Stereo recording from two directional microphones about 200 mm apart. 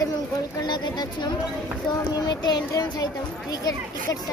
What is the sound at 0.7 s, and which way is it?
Speech, 20° left (ahead or behind).